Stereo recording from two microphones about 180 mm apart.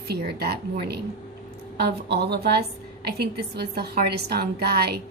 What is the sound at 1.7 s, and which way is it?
A woman's voice, 65° right (ahead or behind).